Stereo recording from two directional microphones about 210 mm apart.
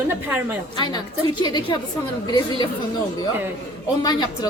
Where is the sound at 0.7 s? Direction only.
20° left (ahead or behind).